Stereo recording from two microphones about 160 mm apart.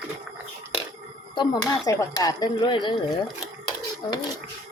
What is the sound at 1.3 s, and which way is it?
Speech, 25° left (ahead or behind).